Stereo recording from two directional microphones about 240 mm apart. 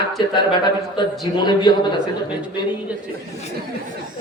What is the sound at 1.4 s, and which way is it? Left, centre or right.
Speech, centre.